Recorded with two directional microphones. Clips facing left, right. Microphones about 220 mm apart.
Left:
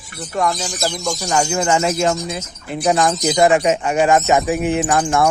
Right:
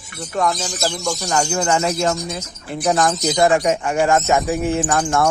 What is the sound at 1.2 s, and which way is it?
Speech, 10° left (ahead or behind).